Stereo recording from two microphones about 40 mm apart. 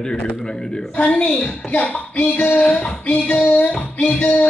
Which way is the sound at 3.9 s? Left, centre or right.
Left.